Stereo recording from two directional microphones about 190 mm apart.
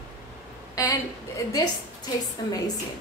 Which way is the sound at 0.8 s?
20° left (ahead or behind).